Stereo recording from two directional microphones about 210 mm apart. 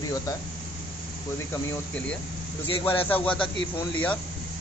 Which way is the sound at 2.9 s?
10° left (ahead or behind).